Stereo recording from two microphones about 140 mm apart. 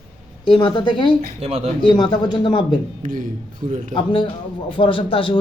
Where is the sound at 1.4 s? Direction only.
45° right (ahead or behind).